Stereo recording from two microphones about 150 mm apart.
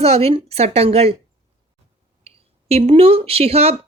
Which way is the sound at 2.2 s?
45° right (ahead or behind).